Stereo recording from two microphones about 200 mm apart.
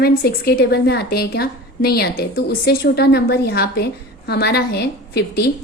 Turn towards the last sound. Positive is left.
turn(degrees=55)  # may be behind; listen again after turning